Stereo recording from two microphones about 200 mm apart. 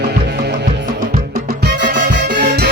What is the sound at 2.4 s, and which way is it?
Music, 55° right (ahead or behind).